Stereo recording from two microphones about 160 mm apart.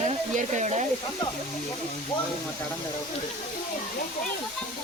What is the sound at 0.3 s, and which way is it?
Speech, 50° right (ahead or behind).